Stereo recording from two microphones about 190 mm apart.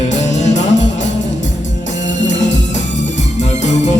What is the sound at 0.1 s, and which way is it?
Music, 40° left (ahead or behind).